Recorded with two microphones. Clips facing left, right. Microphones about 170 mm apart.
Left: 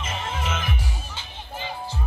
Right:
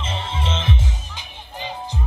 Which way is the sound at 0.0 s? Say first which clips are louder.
Right 2 dB; 30° right (ahead or behind).